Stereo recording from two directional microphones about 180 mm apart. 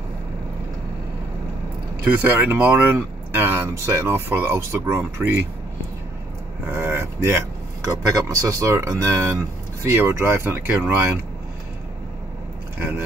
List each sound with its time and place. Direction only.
2.1 s speech: 10° right (ahead or behind)
6.7 s speech: 15° right (ahead or behind)